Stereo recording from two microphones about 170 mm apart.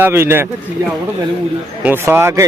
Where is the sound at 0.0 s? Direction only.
15° right (ahead or behind).